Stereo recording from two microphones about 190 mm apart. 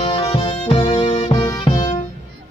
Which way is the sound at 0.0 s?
30° left (ahead or behind).